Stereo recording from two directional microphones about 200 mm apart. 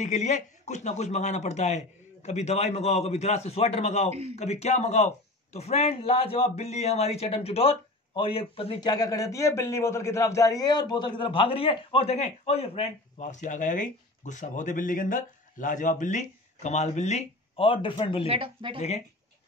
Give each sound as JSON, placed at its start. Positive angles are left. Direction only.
{"t": 0.0, "sound": "a man's voice", "side_deg": 35}
{"t": 18.3, "sound": "speech", "side_deg": -25}